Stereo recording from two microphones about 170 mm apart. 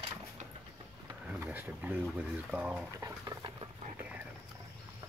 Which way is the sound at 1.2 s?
10° right (ahead or behind).